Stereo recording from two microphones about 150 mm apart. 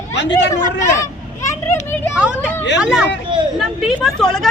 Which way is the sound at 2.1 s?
5° right (ahead or behind).